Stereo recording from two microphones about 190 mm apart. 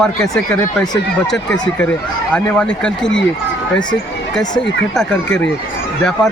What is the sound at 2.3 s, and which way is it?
Speech, 5° left (ahead or behind).